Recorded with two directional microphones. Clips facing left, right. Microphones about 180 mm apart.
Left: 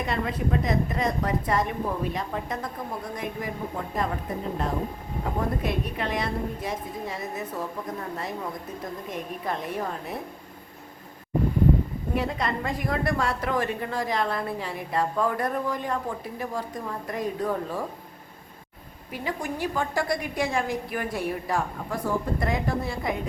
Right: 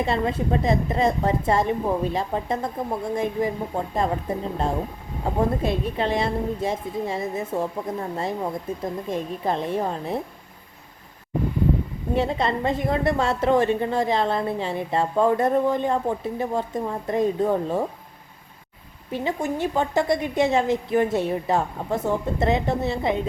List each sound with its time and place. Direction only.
0.0 s a woman's voice: 25° right (ahead or behind)
12.1 s a woman's voice: 25° right (ahead or behind)
19.1 s a woman's voice: 25° right (ahead or behind)